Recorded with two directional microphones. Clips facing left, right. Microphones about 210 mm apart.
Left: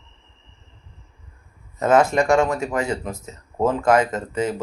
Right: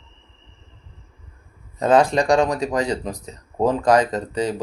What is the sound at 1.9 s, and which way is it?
Speech, 35° right (ahead or behind).